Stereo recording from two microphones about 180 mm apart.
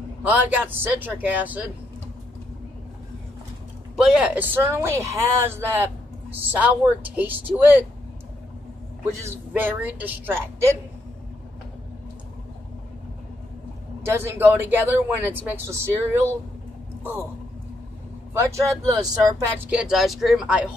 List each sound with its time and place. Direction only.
0.3 s speech: 10° right (ahead or behind)
3.9 s speech: 5° right (ahead or behind)
9.5 s speech: 10° right (ahead or behind)
14.0 s speech: 10° right (ahead or behind)
18.3 s speech: 15° right (ahead or behind)
19.6 s speech: 5° right (ahead or behind)